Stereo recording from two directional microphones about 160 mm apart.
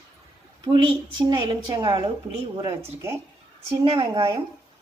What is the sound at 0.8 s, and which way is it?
A woman's voice, 30° right (ahead or behind).